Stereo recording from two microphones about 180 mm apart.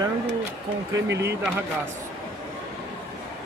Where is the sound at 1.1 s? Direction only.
70° right (ahead or behind).